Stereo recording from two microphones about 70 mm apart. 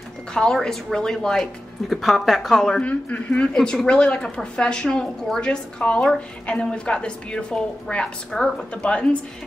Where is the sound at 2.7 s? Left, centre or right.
Centre.